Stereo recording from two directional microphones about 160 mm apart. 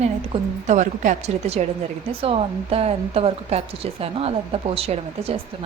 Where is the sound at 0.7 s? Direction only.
50° right (ahead or behind).